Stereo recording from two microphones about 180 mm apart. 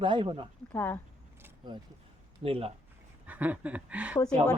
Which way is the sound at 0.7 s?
10° left (ahead or behind).